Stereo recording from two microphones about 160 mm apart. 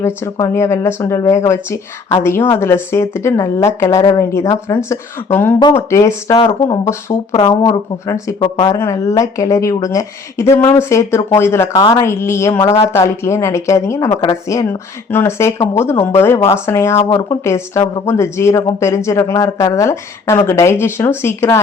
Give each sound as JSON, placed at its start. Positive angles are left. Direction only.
{"t": 0.0, "sound": "a woman's voice", "side_deg": 15}
{"t": 6.3, "sound": "speech", "side_deg": 35}
{"t": 6.7, "sound": "a woman's voice", "side_deg": 20}